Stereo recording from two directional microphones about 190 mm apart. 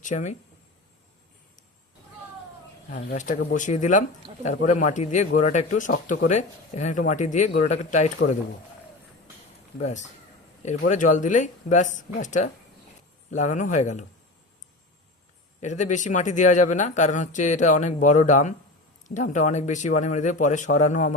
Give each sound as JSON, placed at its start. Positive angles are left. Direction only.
{"t": 0.0, "sound": "speech", "side_deg": 40}
{"t": 2.9, "sound": "speech", "side_deg": 40}
{"t": 10.7, "sound": "speech", "side_deg": 40}
{"t": 15.6, "sound": "speech", "side_deg": 40}